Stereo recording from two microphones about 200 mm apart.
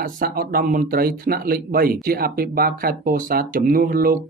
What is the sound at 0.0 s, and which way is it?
Speech, 45° right (ahead or behind).